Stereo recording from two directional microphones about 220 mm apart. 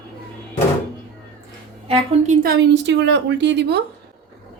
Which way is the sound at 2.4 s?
50° right (ahead or behind).